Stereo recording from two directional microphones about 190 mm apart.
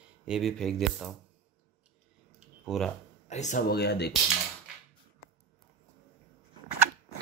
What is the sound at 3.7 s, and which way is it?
Speech, 60° left (ahead or behind).